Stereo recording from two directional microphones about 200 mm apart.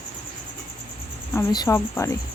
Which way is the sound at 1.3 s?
15° left (ahead or behind).